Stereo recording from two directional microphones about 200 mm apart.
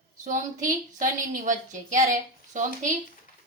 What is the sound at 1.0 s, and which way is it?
A woman's voice, 40° right (ahead or behind).